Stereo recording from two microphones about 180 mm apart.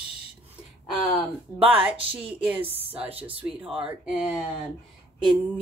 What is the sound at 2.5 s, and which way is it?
Speech, 30° right (ahead or behind).